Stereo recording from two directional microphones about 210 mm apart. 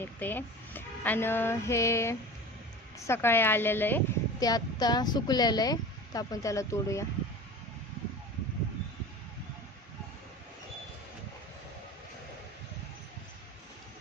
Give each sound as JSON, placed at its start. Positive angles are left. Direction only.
{"t": 0.0, "sound": "speech", "side_deg": 10}